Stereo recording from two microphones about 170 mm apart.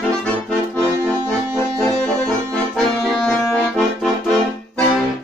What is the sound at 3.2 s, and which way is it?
Accordion, 5° left (ahead or behind).